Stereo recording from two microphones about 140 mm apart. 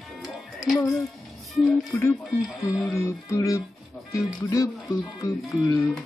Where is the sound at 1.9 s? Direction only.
15° left (ahead or behind).